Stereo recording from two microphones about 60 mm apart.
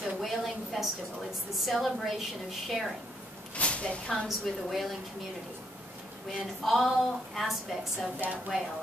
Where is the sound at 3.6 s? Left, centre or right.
Centre.